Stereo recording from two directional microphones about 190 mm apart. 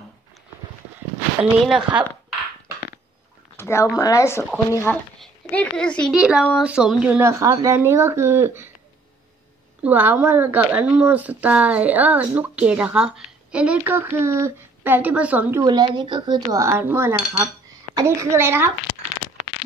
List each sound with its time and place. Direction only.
1.4 s speech: 5° right (ahead or behind)
3.5 s a child's voice: 15° left (ahead or behind); by 8.7 s 10° right (ahead or behind)
9.8 s speech: 10° right (ahead or behind)
15.6 s speech: 25° right (ahead or behind)